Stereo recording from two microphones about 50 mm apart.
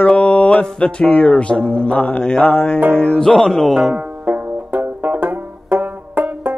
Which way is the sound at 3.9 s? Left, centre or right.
Right.